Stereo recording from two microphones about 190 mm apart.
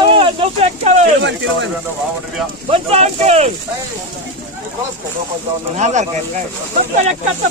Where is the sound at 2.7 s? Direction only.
30° right (ahead or behind).